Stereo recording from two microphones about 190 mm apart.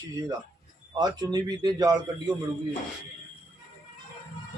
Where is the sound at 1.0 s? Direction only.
20° right (ahead or behind).